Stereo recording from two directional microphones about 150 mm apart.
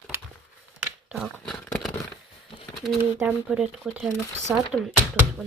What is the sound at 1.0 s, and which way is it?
Dog, centre (ahead or behind).